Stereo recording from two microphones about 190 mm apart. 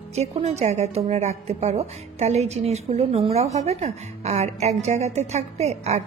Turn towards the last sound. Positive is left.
turn(degrees=-35)  # may be behind; listen again after turning